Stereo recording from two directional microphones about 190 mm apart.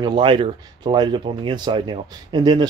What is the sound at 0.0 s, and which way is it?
Speech, 25° right (ahead or behind).